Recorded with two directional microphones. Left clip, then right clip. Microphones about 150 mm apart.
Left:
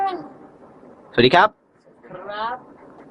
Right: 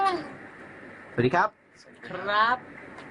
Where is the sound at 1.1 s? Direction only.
25° left (ahead or behind).